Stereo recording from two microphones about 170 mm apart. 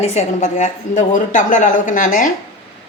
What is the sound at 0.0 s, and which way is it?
A woman's voice, 40° left (ahead or behind).